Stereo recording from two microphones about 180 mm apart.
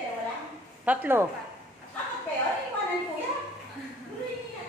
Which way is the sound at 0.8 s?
10° right (ahead or behind).